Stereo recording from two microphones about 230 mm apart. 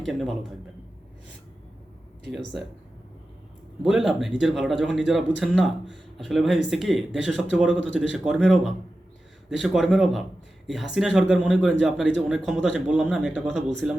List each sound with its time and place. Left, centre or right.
0.0 s a man's voice: centre
2.3 s a man's voice: centre
3.8 s a man's voice: centre
7.7 s speech: left
8.1 s a man's voice: centre